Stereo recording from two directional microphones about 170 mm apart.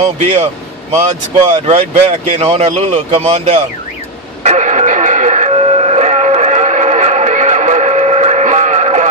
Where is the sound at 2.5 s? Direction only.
40° right (ahead or behind).